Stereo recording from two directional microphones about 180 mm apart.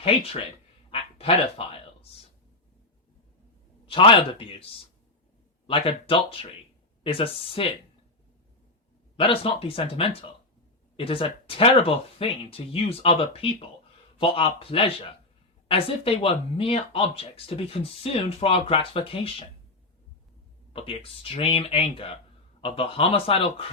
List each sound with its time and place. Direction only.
0.9 s quack: 30° left (ahead or behind)
3.8 s speech: 30° left (ahead or behind)
5.6 s speech: 30° left (ahead or behind)
9.1 s speech: 30° left (ahead or behind)
20.7 s speech: 30° left (ahead or behind)